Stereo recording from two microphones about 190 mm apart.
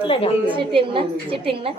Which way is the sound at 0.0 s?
30° left (ahead or behind).